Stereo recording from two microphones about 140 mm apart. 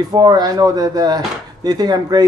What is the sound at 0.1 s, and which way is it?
Speech, 30° right (ahead or behind).